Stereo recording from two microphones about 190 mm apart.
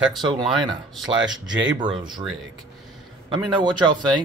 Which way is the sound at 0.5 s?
Centre (ahead or behind).